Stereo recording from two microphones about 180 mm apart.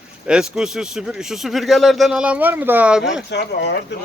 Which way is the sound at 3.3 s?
70° left (ahead or behind).